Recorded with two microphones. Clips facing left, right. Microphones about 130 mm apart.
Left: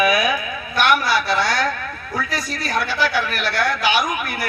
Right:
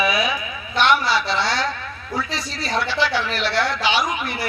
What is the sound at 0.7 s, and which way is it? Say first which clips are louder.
Speech: even; 25° right (ahead or behind).